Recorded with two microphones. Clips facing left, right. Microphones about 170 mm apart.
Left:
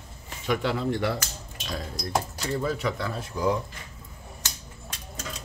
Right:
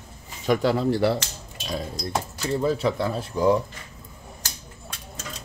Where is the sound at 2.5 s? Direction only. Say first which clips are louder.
Right 5 dB; 30° right (ahead or behind).